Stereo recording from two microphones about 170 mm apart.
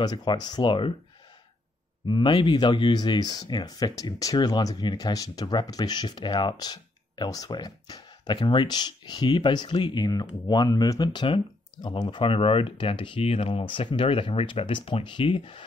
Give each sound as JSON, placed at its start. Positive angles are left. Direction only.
{"t": 0.0, "sound": "speech", "side_deg": 25}
{"t": 2.0, "sound": "speech", "side_deg": 25}